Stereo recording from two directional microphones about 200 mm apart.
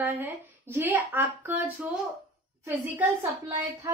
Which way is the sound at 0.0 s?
10° right (ahead or behind).